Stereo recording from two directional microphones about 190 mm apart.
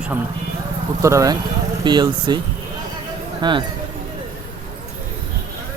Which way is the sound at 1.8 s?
25° right (ahead or behind).